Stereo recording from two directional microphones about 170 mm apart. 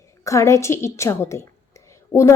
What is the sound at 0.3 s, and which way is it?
A woman's voice, 15° left (ahead or behind).